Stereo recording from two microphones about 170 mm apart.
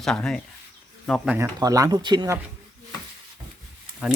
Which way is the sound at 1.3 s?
15° right (ahead or behind).